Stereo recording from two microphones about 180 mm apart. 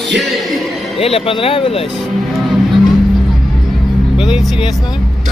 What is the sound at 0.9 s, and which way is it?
Speech, 35° left (ahead or behind).